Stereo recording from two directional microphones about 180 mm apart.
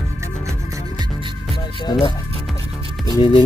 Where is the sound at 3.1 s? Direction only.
25° left (ahead or behind).